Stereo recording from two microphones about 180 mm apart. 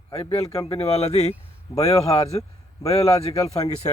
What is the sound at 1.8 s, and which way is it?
Speech, 20° left (ahead or behind).